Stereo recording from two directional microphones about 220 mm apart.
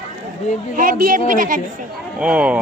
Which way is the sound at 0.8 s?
40° right (ahead or behind).